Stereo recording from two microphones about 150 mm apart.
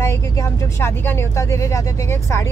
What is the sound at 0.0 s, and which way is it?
Speech, 20° left (ahead or behind).